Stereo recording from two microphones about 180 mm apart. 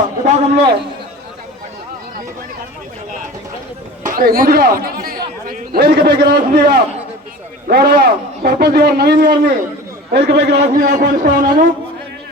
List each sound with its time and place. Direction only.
0.3 s a man's voice: 40° right (ahead or behind)
4.0 s speech: 50° right (ahead or behind)
5.5 s chatter: 60° right (ahead or behind)
6.1 s a man's voice: 65° right (ahead or behind)
10.6 s speech: 45° right (ahead or behind)